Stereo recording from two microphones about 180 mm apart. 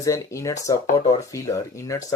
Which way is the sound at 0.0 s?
15° left (ahead or behind).